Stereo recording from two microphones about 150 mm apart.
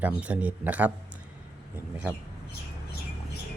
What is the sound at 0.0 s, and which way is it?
Speech, 10° right (ahead or behind).